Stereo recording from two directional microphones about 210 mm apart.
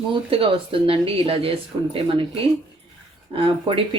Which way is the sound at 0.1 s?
25° right (ahead or behind).